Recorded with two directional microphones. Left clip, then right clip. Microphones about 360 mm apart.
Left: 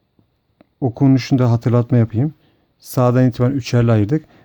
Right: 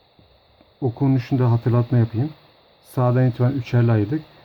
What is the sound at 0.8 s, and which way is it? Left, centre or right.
Speech, left.